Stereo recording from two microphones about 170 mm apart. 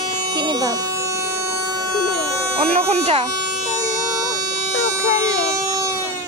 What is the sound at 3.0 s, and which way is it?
Speech, 40° right (ahead or behind).